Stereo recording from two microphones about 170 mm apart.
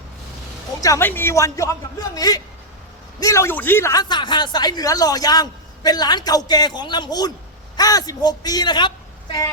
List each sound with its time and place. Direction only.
0.8 s a man's voice: 15° left (ahead or behind)